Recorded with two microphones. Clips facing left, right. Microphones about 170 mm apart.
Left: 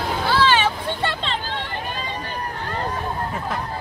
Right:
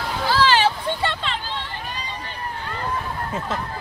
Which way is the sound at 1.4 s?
50° left (ahead or behind).